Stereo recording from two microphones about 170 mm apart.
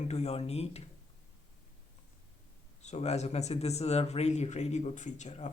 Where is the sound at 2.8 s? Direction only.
40° left (ahead or behind).